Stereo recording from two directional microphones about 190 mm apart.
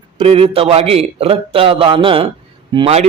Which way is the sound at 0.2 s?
30° right (ahead or behind).